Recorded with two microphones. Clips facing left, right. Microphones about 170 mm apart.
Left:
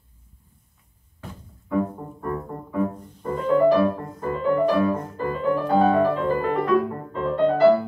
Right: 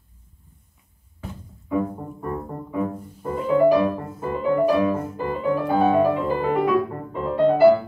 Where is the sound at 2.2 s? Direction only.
10° right (ahead or behind).